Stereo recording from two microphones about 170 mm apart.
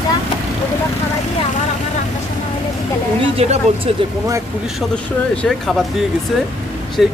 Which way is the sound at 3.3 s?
40° right (ahead or behind).